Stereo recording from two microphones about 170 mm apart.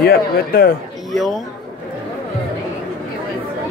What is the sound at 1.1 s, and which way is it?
Speech, centre (ahead or behind).